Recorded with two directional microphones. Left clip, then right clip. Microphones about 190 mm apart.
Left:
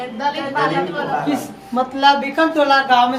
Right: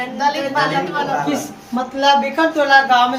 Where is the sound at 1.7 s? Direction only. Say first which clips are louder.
Even; 30° left (ahead or behind).